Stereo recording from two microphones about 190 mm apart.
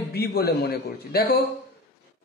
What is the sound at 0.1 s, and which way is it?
A man's voice, 55° left (ahead or behind).